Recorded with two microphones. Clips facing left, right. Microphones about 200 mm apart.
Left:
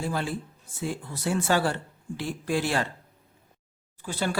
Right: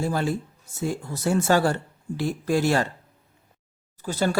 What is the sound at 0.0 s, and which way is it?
Speech, 40° right (ahead or behind).